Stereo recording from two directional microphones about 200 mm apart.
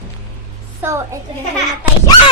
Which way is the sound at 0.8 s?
10° right (ahead or behind).